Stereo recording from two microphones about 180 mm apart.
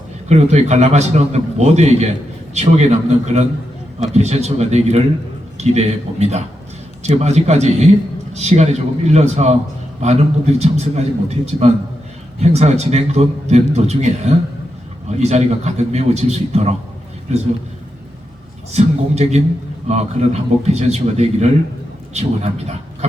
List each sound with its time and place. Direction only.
0.3 s a man's voice: 40° right (ahead or behind)
18.7 s a man's voice: 35° right (ahead or behind)